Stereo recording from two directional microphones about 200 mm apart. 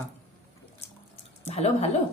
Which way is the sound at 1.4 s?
30° left (ahead or behind).